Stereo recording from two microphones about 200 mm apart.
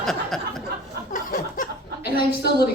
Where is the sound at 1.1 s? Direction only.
45° left (ahead or behind).